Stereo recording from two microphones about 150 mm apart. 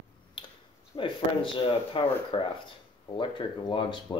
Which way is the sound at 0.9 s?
35° left (ahead or behind).